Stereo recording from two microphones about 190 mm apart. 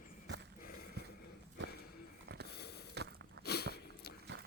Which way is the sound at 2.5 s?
60° left (ahead or behind).